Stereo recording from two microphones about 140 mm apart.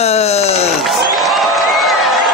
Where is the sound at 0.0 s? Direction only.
50° left (ahead or behind).